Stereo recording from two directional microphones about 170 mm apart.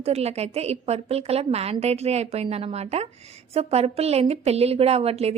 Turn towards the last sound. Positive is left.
turn(degrees=-35)  # may be behind; listen again after turning